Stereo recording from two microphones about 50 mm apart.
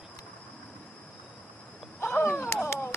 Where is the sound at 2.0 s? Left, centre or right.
Left.